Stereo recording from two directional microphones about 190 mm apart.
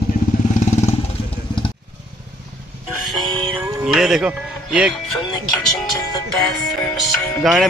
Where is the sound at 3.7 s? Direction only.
5° right (ahead or behind).